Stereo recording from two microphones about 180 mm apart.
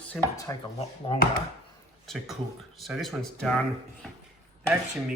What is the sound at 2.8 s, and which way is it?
Speech, centre (ahead or behind).